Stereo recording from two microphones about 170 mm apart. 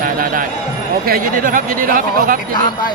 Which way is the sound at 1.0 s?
55° right (ahead or behind).